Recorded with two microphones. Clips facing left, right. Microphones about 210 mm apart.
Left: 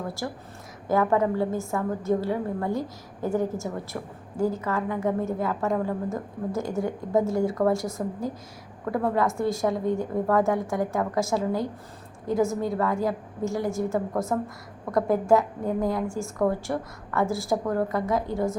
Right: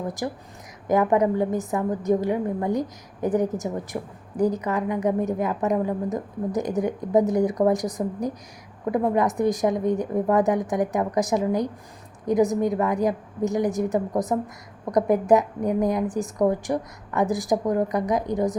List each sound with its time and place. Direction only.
0.2 s a woman's voice: 15° right (ahead or behind)